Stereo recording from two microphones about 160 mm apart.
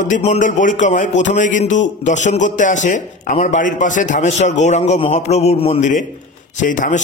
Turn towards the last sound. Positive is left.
turn(degrees=55)  # may be behind; listen again after turning